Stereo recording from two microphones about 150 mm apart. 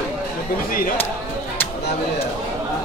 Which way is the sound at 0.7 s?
75° left (ahead or behind).